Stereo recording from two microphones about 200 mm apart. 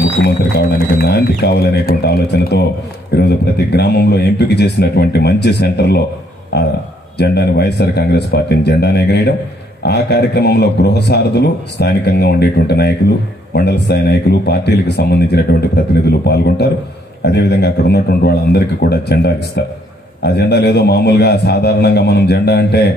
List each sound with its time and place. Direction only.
0.9 s a man's voice: 55° left (ahead or behind)